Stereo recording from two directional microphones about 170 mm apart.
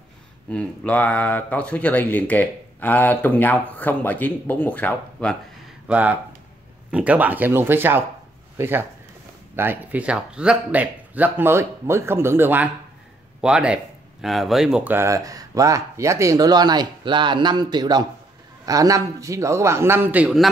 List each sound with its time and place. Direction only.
0.5 s speech: 10° left (ahead or behind)
5.9 s speech: 10° right (ahead or behind)